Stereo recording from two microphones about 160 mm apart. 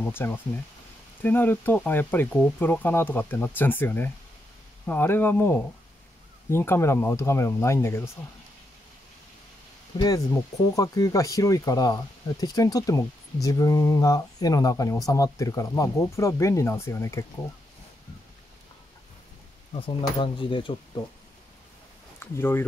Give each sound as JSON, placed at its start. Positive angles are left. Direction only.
{"t": 0.1, "sound": "speech", "side_deg": 15}
{"t": 9.9, "sound": "speech", "side_deg": 25}
{"t": 19.7, "sound": "speech", "side_deg": 30}
{"t": 22.2, "sound": "speech", "side_deg": 15}